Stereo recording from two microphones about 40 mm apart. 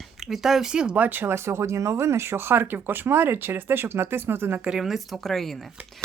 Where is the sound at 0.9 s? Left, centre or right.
Right.